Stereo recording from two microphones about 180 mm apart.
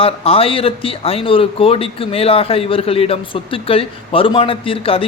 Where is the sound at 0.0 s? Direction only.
30° left (ahead or behind).